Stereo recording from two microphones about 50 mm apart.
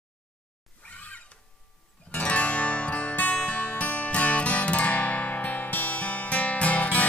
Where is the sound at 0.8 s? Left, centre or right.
Left.